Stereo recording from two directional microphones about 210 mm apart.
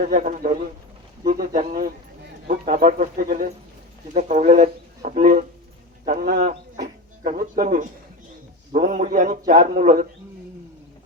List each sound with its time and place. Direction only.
0.0 s speech: 40° right (ahead or behind)